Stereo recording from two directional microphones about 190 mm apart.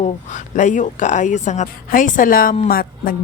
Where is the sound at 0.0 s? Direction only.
40° left (ahead or behind).